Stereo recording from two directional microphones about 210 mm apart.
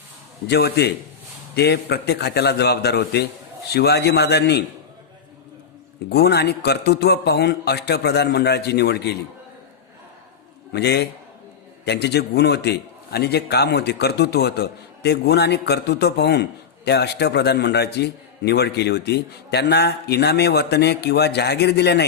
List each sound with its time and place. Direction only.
0.4 s a man's voice: 50° left (ahead or behind)
6.1 s a man's voice: 50° left (ahead or behind)
10.7 s a man's voice: 50° left (ahead or behind)